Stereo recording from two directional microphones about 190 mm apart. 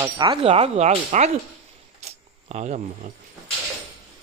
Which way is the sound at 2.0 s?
35° right (ahead or behind).